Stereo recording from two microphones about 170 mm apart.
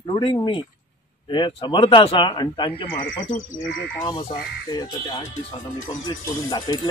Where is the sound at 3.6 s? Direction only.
90° left.